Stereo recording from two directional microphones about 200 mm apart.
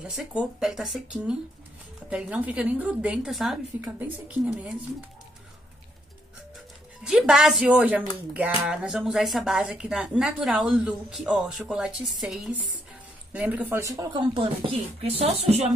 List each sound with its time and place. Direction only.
0.0 s a woman's voice: 5° right (ahead or behind)
7.0 s speech: 5° right (ahead or behind); by 15.7 s 30° right (ahead or behind)